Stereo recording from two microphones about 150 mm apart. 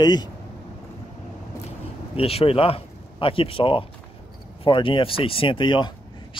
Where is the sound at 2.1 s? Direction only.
40° left (ahead or behind).